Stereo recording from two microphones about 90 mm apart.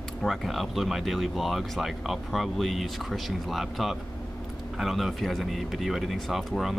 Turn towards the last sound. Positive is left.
turn(degrees=0)  # may be behind; listen again after turning